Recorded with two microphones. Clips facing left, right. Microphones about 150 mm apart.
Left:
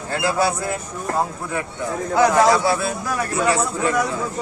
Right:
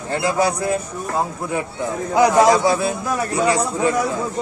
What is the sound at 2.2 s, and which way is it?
Speech, 15° right (ahead or behind).